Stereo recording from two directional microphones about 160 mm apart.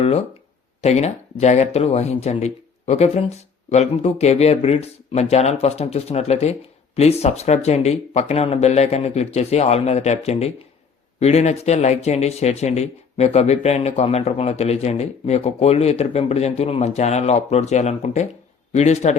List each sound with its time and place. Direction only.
0.0 s speech: 40° left (ahead or behind)